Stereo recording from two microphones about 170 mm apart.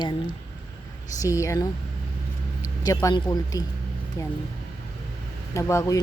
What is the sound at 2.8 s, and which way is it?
Speech, 20° left (ahead or behind).